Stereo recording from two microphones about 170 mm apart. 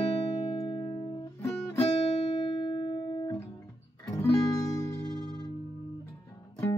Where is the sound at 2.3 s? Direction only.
30° left (ahead or behind).